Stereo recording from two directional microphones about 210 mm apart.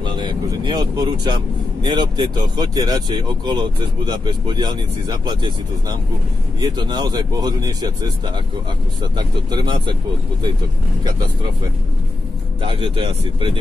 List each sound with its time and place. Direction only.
0.0 s speech: 20° right (ahead or behind)
12.6 s speech: 25° right (ahead or behind)